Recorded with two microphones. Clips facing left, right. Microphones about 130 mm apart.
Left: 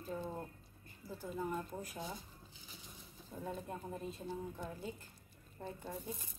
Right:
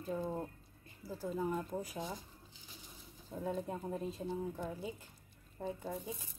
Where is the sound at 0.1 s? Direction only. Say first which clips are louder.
Right 4 dB; 10° right (ahead or behind).